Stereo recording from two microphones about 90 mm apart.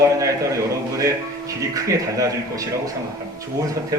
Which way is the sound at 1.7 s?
35° right (ahead or behind).